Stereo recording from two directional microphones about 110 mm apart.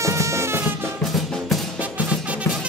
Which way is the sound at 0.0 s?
25° right (ahead or behind).